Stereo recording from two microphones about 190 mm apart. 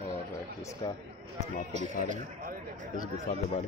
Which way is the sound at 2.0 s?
40° right (ahead or behind).